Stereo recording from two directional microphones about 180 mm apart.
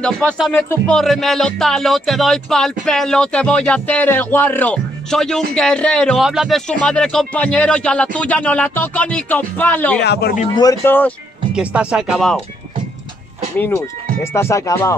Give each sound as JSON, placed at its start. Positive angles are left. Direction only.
{"t": 0.0, "sound": "speech", "side_deg": 5}
{"t": 9.9, "sound": "a man's voice", "side_deg": 65}
{"t": 10.5, "sound": "speech", "side_deg": 20}
{"t": 11.5, "sound": "speech", "side_deg": -5}
{"t": 14.2, "sound": "speech", "side_deg": 15}